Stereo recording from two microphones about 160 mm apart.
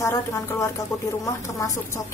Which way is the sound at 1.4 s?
20° left (ahead or behind).